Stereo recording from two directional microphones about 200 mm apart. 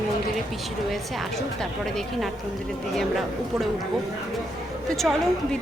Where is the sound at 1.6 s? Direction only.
5° left (ahead or behind).